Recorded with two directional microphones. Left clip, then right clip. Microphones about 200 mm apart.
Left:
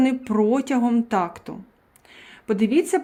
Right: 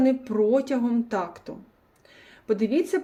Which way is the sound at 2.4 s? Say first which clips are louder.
Left 3 dB; 55° left (ahead or behind).